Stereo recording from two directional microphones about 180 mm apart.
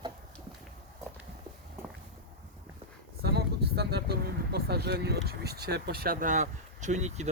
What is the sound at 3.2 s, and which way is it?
Vehicle, 60° right (ahead or behind).